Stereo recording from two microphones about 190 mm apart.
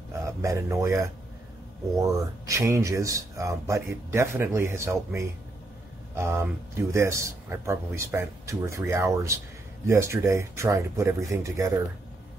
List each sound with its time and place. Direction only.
0.2 s speech: 15° right (ahead or behind)